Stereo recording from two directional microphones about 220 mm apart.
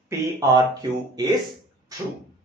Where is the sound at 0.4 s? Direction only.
15° right (ahead or behind).